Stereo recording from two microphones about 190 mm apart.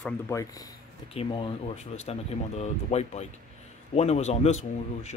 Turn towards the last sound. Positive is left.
turn(degrees=35)  # may be behind; listen again after turning